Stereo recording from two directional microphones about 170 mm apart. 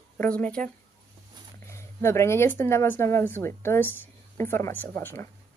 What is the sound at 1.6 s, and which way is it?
Speech, 15° left (ahead or behind).